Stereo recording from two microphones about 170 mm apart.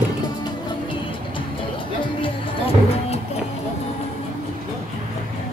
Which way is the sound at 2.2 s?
35° left (ahead or behind).